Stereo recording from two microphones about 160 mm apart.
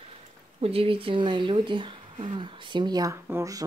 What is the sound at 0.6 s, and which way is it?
Speech, 35° right (ahead or behind).